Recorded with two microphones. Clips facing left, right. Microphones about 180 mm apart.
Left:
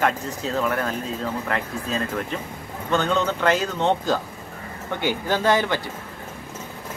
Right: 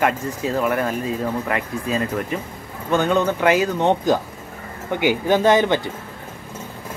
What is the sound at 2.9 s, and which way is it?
Speech, 15° right (ahead or behind).